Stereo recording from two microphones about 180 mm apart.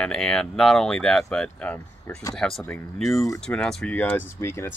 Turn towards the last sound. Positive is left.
turn(degrees=15)  # may be behind; listen again after turning